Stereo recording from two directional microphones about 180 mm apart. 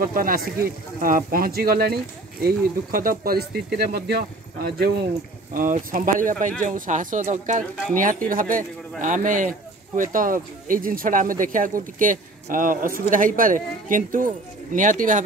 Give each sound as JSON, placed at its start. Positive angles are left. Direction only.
{"t": 0.0, "sound": "speech", "side_deg": -50}
{"t": 5.5, "sound": "speech", "side_deg": -50}